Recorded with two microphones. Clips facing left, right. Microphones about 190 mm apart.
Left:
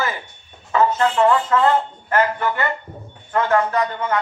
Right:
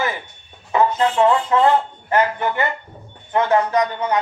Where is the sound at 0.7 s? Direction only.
15° right (ahead or behind).